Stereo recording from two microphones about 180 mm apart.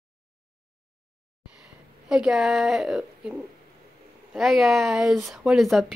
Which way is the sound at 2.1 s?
Centre (ahead or behind).